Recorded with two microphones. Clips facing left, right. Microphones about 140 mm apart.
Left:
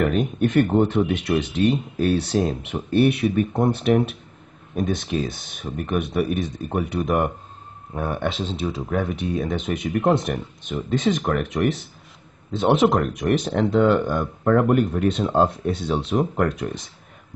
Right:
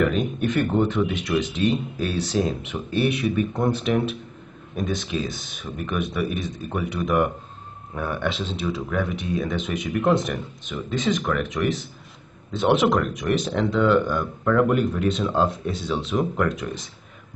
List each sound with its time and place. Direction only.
0.0 s speech: 45° left (ahead or behind)
2.9 s speech: 55° left (ahead or behind)